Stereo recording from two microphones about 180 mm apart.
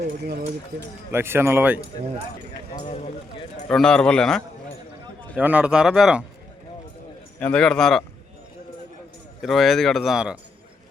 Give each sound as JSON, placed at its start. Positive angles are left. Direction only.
{"t": 1.1, "sound": "speech", "side_deg": -15}
{"t": 2.8, "sound": "speech", "side_deg": 35}
{"t": 3.7, "sound": "speech", "side_deg": 5}
{"t": 5.4, "sound": "speech", "side_deg": -10}
{"t": 7.3, "sound": "speech", "side_deg": 5}
{"t": 9.4, "sound": "speech", "side_deg": 0}